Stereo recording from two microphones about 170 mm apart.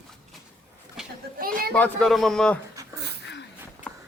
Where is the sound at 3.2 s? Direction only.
90° left.